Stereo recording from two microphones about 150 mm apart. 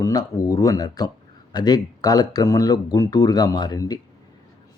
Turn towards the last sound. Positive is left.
turn(degrees=25)  # may be behind; listen again after turning